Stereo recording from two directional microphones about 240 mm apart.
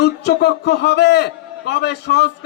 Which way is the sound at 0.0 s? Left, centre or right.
Left.